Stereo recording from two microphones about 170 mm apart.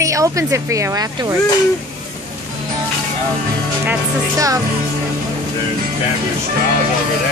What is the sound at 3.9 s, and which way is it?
Speech, 20° right (ahead or behind).